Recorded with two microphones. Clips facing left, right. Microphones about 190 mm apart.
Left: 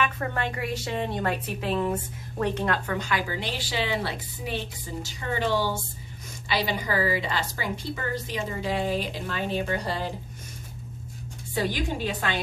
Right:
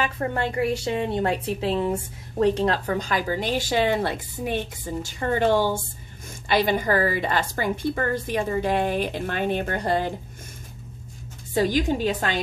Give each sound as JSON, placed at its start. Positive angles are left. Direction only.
{"t": 0.0, "sound": "a woman's voice", "side_deg": -30}
{"t": 11.5, "sound": "a woman's voice", "side_deg": -40}